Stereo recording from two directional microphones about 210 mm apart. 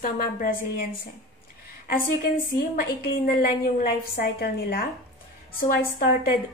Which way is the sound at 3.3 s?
45° left (ahead or behind).